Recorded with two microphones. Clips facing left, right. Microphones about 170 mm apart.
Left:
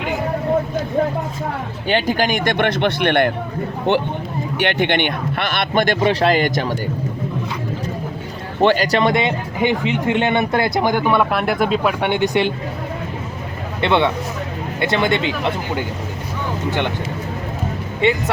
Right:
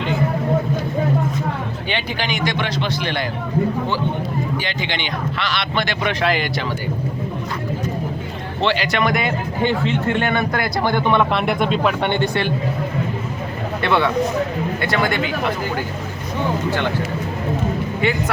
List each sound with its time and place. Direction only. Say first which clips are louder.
1.9 s speech: left 8 dB; 45° left (ahead or behind); by 3.3 s 60° left (ahead or behind)
4.5 s speech: left 7 dB; 65° left (ahead or behind); by 6.0 s 50° left (ahead or behind)
6.0 s speech: left 2 dB; 30° left (ahead or behind)
6.3 s speech: left 5 dB; 45° left (ahead or behind)
8.6 s speech: left 5 dB; 45° left (ahead or behind)
9.0 s speech: left 3 dB; 25° left (ahead or behind)
9.6 s speech: left 1 dB; 15° left (ahead or behind)
10.8 s speech: left 1 dB; 10° left (ahead or behind)
13.8 s speech: left 1 dB; 20° left (ahead or behind)
18.0 s speech: left 4 dB; 25° left (ahead or behind)